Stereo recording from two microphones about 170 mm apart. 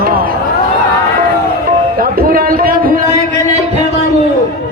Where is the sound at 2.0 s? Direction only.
60° right (ahead or behind).